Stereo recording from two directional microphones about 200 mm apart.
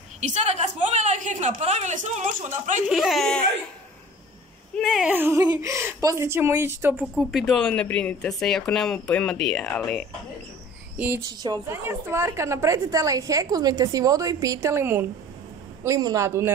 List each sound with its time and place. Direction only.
0.2 s a woman's voice: 35° right (ahead or behind)
2.9 s a woman's voice: centre (ahead or behind)
4.7 s a woman's voice: centre (ahead or behind)
7.0 s a woman's voice: centre (ahead or behind)
11.0 s a woman's voice: 10° right (ahead or behind)